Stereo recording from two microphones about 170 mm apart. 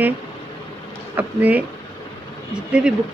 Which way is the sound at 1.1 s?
10° right (ahead or behind).